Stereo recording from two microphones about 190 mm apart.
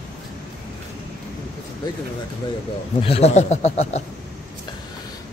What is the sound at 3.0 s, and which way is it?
Speech, 30° left (ahead or behind).